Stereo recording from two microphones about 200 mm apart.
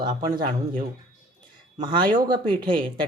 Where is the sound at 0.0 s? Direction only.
25° right (ahead or behind).